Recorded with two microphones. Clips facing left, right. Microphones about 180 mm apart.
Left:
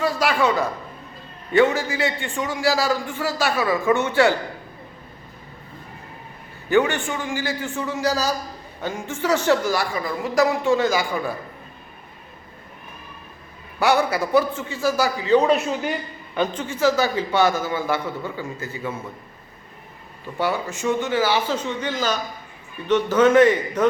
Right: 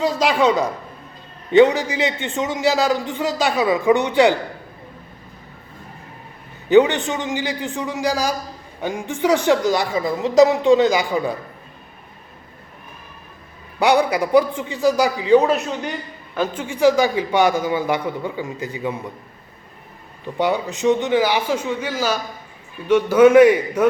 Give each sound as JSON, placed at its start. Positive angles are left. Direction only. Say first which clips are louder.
{"t": 0.0, "sound": "a man's voice", "louder": "right 3 dB", "side_deg": -20}
{"t": 6.7, "sound": "a woman's voice", "louder": "right 6 dB", "side_deg": -20}
{"t": 13.7, "sound": "a woman's voice", "louder": "right 3 dB", "side_deg": -15}
{"t": 15.4, "sound": "a man's voice", "louder": "right 1 dB", "side_deg": 0}
{"t": 16.6, "sound": "a woman's voice", "louder": "right 6 dB", "side_deg": -15}
{"t": 20.4, "sound": "a woman's voice", "louder": "right 4 dB", "side_deg": -20}